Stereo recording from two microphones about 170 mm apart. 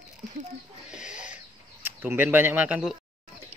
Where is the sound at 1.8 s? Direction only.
10° right (ahead or behind).